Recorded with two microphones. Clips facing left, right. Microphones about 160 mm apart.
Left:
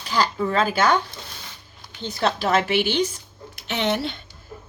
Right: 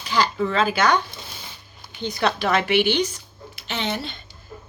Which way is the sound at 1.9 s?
15° right (ahead or behind).